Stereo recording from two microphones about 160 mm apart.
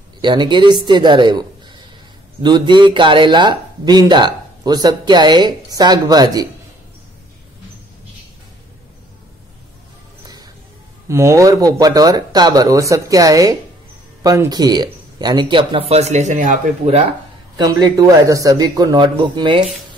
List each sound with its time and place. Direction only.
0.2 s speech: 30° right (ahead or behind)
10.2 s music: 25° right (ahead or behind)
11.1 s speech: 20° right (ahead or behind); by 17.0 s 45° right (ahead or behind)
17.6 s speech: 25° right (ahead or behind)